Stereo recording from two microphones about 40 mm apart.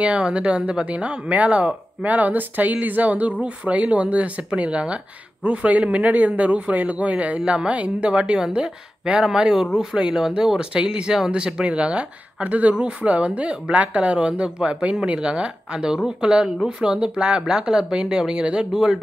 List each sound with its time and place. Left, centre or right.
0.0 s a woman's voice: right
12.4 s speech: right; by 18.9 s centre